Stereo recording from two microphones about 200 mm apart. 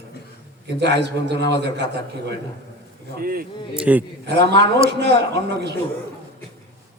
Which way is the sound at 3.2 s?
45° right (ahead or behind).